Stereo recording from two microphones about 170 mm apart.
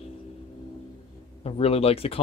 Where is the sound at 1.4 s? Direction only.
35° left (ahead or behind).